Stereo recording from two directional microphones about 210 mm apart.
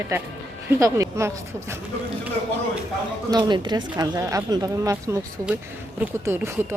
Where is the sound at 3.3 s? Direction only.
20° right (ahead or behind).